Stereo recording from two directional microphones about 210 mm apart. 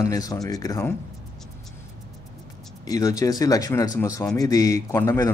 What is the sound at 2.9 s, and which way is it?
Speech, 15° left (ahead or behind).